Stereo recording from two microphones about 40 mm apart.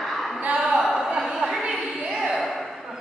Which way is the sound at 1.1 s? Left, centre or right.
Centre.